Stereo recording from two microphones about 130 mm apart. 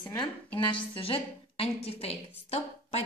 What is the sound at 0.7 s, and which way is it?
A woman's voice, 40° left (ahead or behind).